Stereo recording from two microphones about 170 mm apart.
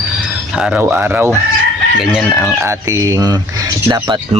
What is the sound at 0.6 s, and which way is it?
Speech, 5° right (ahead or behind).